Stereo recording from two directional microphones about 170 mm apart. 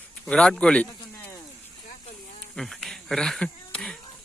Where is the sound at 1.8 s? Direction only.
50° left (ahead or behind).